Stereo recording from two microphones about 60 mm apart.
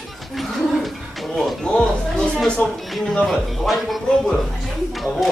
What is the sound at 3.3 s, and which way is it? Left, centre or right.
Speech, centre.